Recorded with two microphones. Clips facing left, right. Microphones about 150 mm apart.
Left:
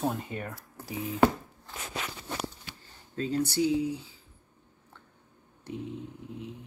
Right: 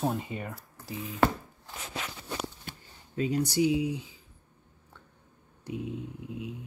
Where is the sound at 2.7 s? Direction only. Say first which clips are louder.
Right 3 dB; 50° right (ahead or behind).